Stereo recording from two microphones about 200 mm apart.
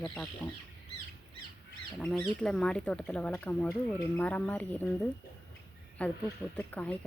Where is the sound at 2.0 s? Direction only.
5° left (ahead or behind).